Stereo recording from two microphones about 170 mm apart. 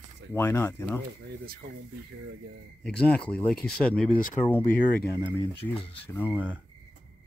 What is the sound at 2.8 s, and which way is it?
A man's voice, 5° left (ahead or behind).